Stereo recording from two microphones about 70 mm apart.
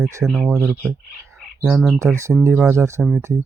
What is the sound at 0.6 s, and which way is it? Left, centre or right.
Speech, right.